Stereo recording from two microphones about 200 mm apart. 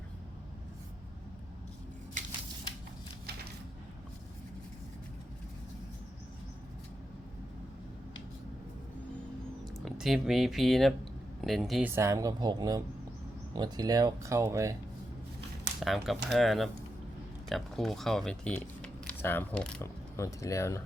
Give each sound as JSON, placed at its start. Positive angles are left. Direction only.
{"t": 9.6, "sound": "speech", "side_deg": 0}
{"t": 11.9, "sound": "speech", "side_deg": -15}
{"t": 15.8, "sound": "speech", "side_deg": 0}